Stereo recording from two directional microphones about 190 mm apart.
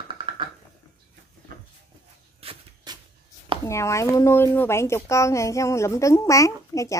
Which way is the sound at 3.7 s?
15° left (ahead or behind).